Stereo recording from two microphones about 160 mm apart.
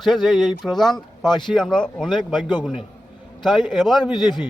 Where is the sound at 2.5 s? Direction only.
30° left (ahead or behind).